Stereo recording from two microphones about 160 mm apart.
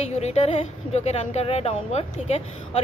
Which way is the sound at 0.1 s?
40° left (ahead or behind).